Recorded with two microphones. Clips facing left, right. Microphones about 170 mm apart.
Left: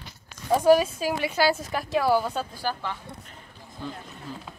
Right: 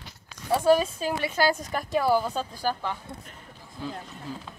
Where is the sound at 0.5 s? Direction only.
10° left (ahead or behind).